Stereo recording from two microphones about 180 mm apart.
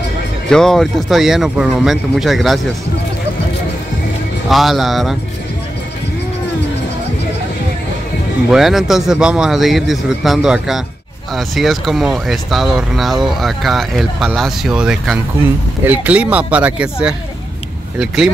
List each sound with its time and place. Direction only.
0.5 s speech: 5° left (ahead or behind)
4.5 s speech: centre (ahead or behind)
8.5 s speech: centre (ahead or behind)